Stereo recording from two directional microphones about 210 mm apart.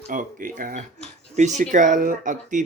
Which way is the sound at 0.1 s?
40° right (ahead or behind).